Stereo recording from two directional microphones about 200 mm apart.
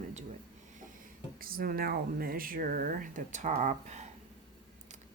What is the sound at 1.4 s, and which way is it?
Speech, 45° right (ahead or behind).